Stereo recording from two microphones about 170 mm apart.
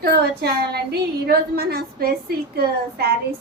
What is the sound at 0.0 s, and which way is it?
A woman's voice, 70° right (ahead or behind).